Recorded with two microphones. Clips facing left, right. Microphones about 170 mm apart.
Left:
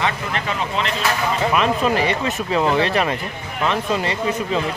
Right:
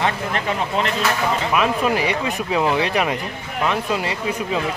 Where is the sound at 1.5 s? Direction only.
10° right (ahead or behind).